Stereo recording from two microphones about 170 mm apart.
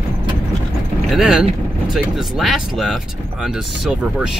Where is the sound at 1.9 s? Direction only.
Centre (ahead or behind).